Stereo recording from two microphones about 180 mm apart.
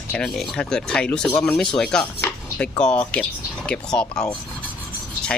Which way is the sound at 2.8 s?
5° left (ahead or behind).